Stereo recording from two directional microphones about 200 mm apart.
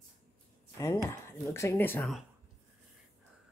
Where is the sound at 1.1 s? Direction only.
15° left (ahead or behind).